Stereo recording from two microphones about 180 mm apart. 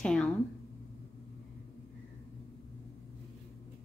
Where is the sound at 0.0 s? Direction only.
5° left (ahead or behind).